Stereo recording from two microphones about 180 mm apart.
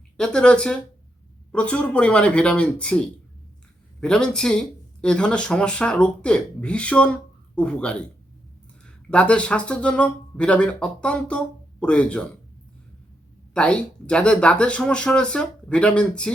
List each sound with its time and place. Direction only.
0.2 s speech: 5° left (ahead or behind)
9.0 s speech: 5° left (ahead or behind)
13.5 s speech: 5° left (ahead or behind)